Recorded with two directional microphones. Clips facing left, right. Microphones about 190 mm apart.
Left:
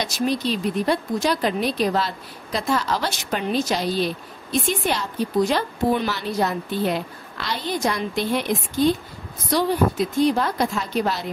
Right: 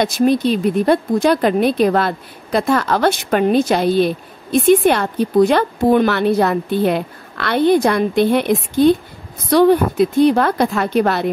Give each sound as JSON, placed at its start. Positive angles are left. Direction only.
{"t": 0.0, "sound": "speech", "side_deg": -55}